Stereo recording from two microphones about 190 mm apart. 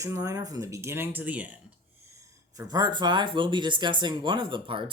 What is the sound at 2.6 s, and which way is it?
Speech, 20° right (ahead or behind).